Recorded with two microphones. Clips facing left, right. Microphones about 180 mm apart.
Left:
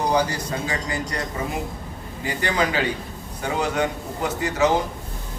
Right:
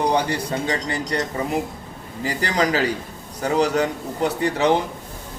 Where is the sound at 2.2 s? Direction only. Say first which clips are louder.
Right 2 dB; 35° right (ahead or behind).